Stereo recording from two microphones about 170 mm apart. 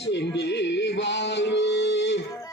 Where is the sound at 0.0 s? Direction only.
90° left.